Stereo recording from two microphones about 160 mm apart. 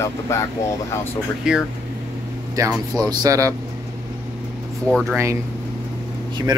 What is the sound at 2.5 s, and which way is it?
Speech, 20° right (ahead or behind).